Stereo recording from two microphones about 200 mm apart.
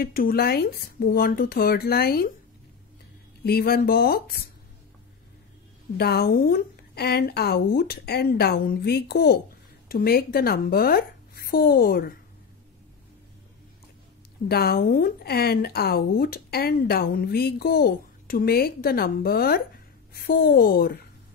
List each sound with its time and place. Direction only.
0.0 s speech: 45° left (ahead or behind)
3.4 s speech: 50° left (ahead or behind)
5.9 s speech: 50° left (ahead or behind)
14.5 s speech: 50° left (ahead or behind)